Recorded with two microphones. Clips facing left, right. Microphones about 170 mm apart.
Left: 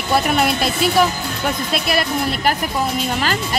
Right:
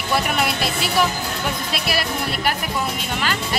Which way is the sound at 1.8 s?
50° left (ahead or behind).